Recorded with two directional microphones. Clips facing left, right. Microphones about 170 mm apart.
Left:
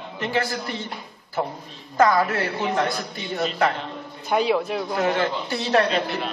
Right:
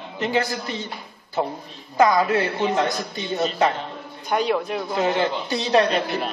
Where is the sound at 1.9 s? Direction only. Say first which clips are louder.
Right 1 dB; 15° right (ahead or behind).